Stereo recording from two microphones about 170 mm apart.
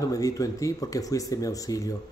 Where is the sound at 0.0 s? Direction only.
20° left (ahead or behind).